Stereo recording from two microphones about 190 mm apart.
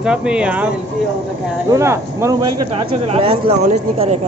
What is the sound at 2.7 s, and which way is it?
Speech, 30° right (ahead or behind).